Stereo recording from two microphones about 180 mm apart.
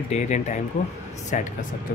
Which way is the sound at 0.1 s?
40° left (ahead or behind).